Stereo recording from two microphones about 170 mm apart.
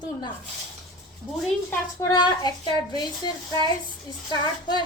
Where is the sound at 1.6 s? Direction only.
20° left (ahead or behind).